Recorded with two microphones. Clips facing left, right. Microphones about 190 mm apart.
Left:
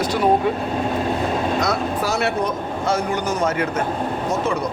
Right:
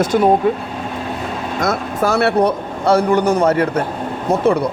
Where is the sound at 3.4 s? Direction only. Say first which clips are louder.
Right 6 dB; 35° right (ahead or behind).